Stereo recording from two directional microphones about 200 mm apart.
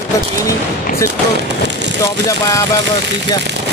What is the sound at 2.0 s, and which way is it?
Speech, 15° left (ahead or behind).